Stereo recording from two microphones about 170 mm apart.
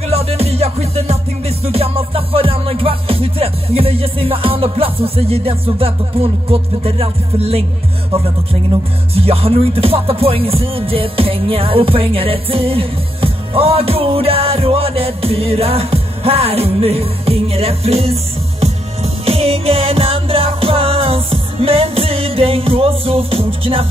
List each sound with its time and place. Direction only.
0.1 s music: 35° right (ahead or behind)
9.1 s music: 35° right (ahead or behind)